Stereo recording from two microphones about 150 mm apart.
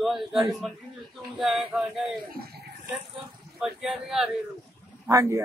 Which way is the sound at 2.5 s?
90° right.